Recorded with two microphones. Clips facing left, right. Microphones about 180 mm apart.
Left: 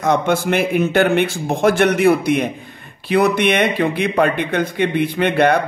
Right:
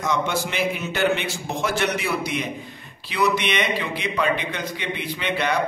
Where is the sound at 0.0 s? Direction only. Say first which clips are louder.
Left 7 dB; 55° left (ahead or behind).